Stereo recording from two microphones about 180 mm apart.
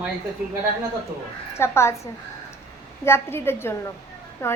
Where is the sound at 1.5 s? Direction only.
15° left (ahead or behind).